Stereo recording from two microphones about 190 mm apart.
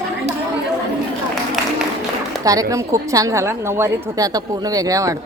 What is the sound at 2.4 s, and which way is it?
A woman's voice, 20° right (ahead or behind).